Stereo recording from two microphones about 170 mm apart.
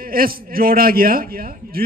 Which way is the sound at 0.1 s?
60° right (ahead or behind).